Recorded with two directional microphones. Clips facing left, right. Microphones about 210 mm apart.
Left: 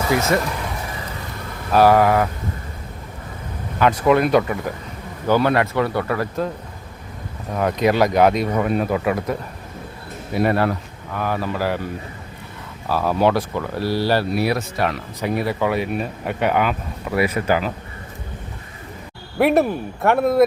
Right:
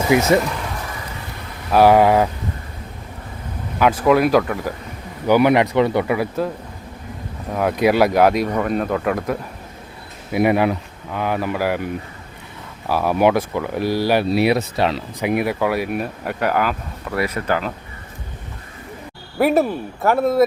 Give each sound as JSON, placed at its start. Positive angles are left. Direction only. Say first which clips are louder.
{"t": 0.1, "sound": "speech", "louder": "right 5 dB", "side_deg": -20}
{"t": 1.7, "sound": "speech", "louder": "right 2 dB", "side_deg": -15}
{"t": 3.8, "sound": "speech", "louder": "right 1 dB", "side_deg": -5}
{"t": 5.3, "sound": "speech", "louder": "right 3 dB", "side_deg": -15}
{"t": 7.5, "sound": "speech", "louder": "right 2 dB", "side_deg": -5}
{"t": 10.3, "sound": "speech", "louder": "right 2 dB", "side_deg": -15}
{"t": 12.9, "sound": "speech", "louder": "right 2 dB", "side_deg": -15}
{"t": 15.2, "sound": "speech", "louder": "right 2 dB", "side_deg": -15}
{"t": 19.4, "sound": "speech", "louder": "even", "side_deg": 0}